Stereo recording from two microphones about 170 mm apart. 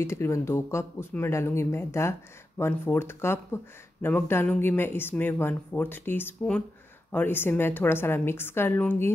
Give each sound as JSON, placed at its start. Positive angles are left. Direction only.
{"t": 0.0, "sound": "speech", "side_deg": 15}